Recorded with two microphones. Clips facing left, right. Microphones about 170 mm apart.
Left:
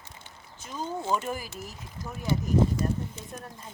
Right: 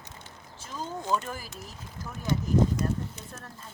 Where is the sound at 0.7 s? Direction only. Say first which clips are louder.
Left 1 dB; 5° left (ahead or behind).